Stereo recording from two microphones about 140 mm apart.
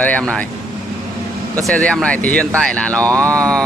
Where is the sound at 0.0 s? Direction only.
10° left (ahead or behind).